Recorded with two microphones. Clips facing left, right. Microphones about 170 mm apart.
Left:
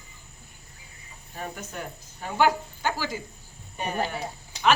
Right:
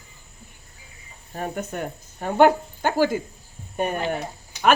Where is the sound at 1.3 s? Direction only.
50° right (ahead or behind).